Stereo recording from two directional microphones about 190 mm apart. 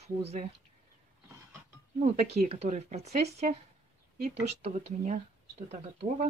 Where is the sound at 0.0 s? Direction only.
35° right (ahead or behind).